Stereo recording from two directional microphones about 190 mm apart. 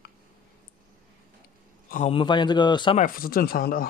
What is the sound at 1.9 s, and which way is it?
Speech, 35° left (ahead or behind).